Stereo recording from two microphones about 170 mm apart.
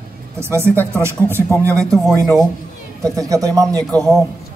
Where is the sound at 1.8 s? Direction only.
Centre (ahead or behind).